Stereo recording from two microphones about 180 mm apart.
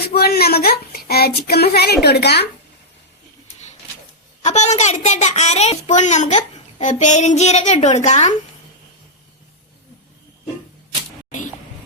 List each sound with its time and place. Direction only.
0.1 s speech: 60° left (ahead or behind)
4.4 s a child's voice: 40° left (ahead or behind)